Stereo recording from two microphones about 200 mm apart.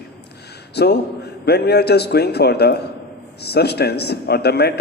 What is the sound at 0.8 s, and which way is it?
A man's voice, 55° left (ahead or behind).